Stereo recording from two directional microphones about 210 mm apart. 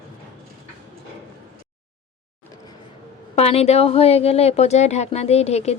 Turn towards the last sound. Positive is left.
turn(degrees=30)  # may be behind; listen again after turning